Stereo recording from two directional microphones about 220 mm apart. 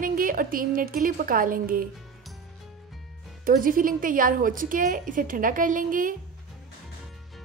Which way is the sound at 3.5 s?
40° right (ahead or behind).